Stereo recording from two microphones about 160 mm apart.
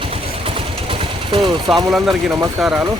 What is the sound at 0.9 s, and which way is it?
Vehicle, 30° right (ahead or behind).